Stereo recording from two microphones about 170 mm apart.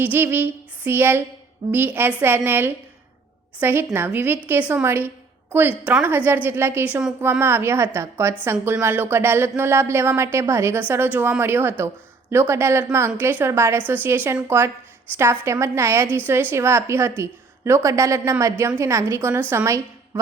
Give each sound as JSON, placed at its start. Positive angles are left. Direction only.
{"t": 0.0, "sound": "female singing", "side_deg": -10}
{"t": 1.7, "sound": "a woman's voice", "side_deg": -10}